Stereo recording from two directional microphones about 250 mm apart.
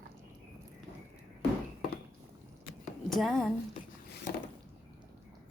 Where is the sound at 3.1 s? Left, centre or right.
Centre.